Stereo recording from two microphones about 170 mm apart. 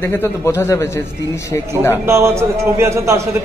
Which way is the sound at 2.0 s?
15° right (ahead or behind).